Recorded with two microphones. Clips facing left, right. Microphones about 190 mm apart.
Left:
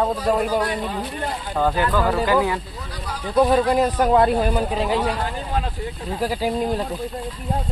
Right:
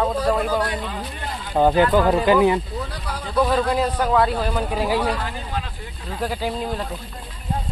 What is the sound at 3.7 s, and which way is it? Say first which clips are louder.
Speech: left 2 dB; 40° left (ahead or behind).